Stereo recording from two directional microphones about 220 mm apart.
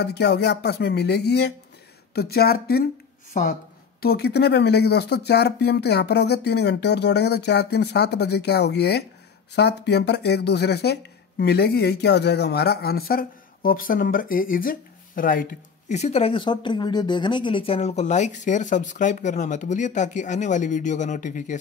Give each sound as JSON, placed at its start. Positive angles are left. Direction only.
{"t": 0.0, "sound": "speech", "side_deg": 45}
{"t": 4.0, "sound": "speech", "side_deg": 45}